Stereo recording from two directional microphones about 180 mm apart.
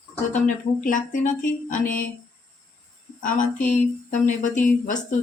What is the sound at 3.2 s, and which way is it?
Speech, 45° left (ahead or behind).